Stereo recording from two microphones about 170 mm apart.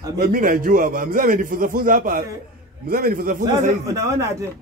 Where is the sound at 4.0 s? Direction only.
15° right (ahead or behind).